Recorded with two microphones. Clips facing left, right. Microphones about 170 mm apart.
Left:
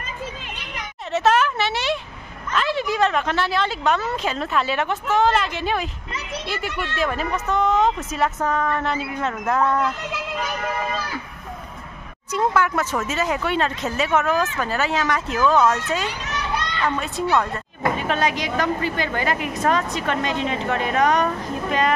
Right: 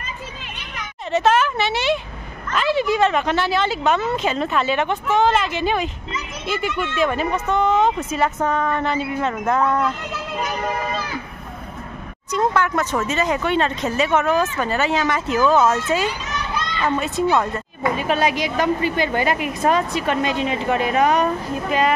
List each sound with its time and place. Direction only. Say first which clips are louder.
1.1 s a woman's voice: right 1 dB; centre (ahead or behind)
12.3 s a woman's voice: right 1 dB; 5° left (ahead or behind)
16.3 s children playing: even; 70° left (ahead or behind)
16.8 s a woman's voice: right 5 dB; 5° right (ahead or behind)